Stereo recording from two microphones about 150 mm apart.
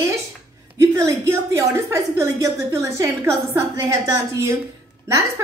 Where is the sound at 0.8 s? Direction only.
20° right (ahead or behind).